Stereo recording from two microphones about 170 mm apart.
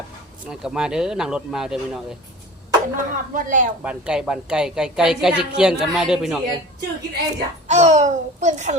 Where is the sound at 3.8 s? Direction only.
5° right (ahead or behind).